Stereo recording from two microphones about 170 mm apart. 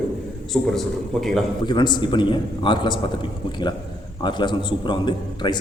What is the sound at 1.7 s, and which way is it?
A man's voice, 25° left (ahead or behind).